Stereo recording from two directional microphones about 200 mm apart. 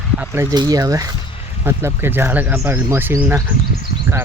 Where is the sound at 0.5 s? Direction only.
20° right (ahead or behind).